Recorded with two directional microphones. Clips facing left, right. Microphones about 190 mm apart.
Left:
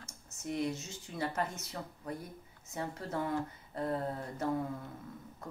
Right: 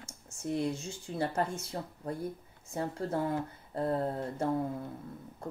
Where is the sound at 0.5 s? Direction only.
30° right (ahead or behind).